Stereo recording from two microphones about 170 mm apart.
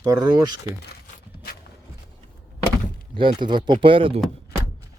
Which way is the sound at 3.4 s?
25° right (ahead or behind).